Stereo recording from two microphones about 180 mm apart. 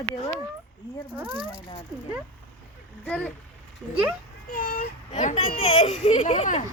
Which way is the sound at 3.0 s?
5° left (ahead or behind).